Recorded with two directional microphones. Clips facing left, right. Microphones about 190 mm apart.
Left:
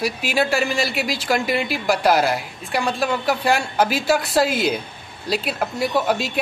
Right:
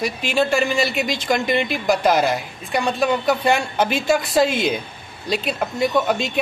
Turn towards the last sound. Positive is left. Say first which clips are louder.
# right 1 dB
turn(degrees=5)  # may be behind; listen again after turning